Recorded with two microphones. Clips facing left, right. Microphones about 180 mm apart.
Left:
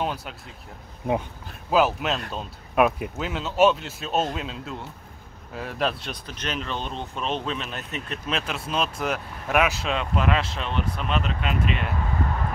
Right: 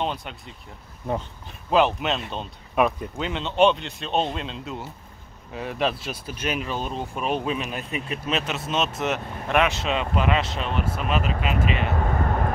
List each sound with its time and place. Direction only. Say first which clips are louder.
0.0 s speech: even; 5° left (ahead or behind)
1.7 s speech: right 1 dB; 5° left (ahead or behind)
12.0 s a sound: right 4 dB; 50° right (ahead or behind)